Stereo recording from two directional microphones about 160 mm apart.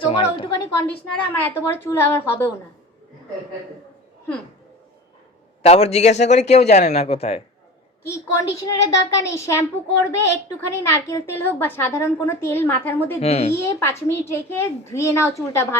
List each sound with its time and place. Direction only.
0.0 s a woman's voice: 35° left (ahead or behind)
0.5 s a child's voice: 20° left (ahead or behind)
1.0 s a woman's voice: 10° left (ahead or behind)
5.6 s a man's voice: 40° left (ahead or behind)
8.0 s a child's voice: 20° left (ahead or behind)
13.1 s a child's voice: 40° left (ahead or behind)
13.5 s a woman's voice: 15° left (ahead or behind)